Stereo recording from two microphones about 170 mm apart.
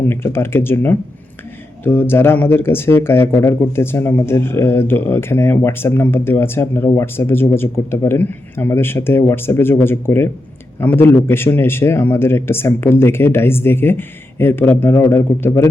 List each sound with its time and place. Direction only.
0.0 s speech: 15° left (ahead or behind)